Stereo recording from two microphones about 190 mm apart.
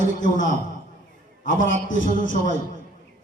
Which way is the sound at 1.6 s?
45° left (ahead or behind).